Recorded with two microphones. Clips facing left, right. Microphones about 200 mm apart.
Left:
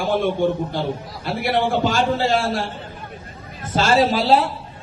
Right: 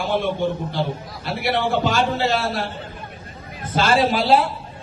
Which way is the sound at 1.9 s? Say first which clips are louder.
Left 1 dB; 30° left (ahead or behind).